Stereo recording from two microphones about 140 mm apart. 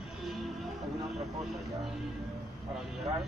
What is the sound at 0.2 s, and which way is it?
Music, centre (ahead or behind).